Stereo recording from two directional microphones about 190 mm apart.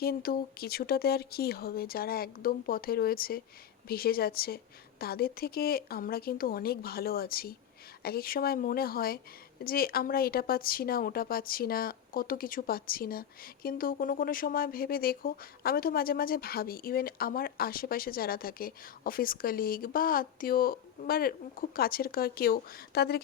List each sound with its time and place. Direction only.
0.0 s speech: 55° left (ahead or behind)